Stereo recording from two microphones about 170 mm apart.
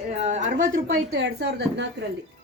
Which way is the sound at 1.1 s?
90° right.